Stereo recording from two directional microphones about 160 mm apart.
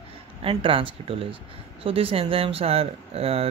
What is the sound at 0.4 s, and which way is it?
Speech, 35° right (ahead or behind).